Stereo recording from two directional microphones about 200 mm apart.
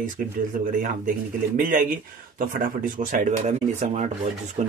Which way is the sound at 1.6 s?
40° right (ahead or behind).